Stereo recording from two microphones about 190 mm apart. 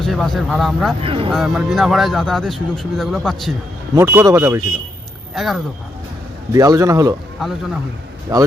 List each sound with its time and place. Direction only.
0.0 s speech: centre (ahead or behind)
1.0 s speech: 30° right (ahead or behind)
1.3 s speech: centre (ahead or behind)
3.9 s speech: 15° right (ahead or behind)
5.3 s speech: centre (ahead or behind)
6.5 s speech: 20° right (ahead or behind)
8.3 s speech: 20° right (ahead or behind)